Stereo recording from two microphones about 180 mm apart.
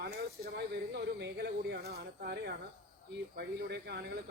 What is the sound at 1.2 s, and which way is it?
Speech, 65° right (ahead or behind).